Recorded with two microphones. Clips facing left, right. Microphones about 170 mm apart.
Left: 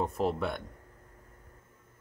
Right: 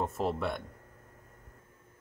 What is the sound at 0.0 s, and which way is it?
Speech, centre (ahead or behind).